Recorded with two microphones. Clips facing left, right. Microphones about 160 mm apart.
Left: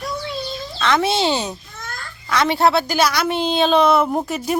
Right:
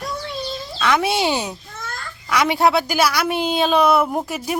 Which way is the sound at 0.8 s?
10° right (ahead or behind).